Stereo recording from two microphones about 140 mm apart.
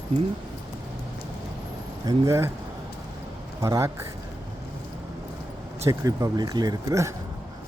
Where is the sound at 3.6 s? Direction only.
25° right (ahead or behind).